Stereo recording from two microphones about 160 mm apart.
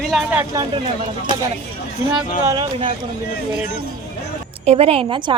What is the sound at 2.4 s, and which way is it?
Speech, 25° right (ahead or behind).